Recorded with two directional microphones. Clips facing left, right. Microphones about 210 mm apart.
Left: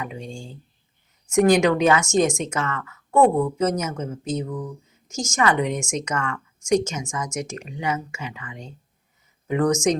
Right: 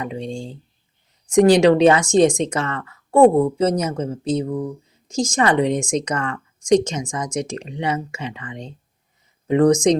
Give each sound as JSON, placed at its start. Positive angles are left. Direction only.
{"t": 0.0, "sound": "a woman's voice", "side_deg": -35}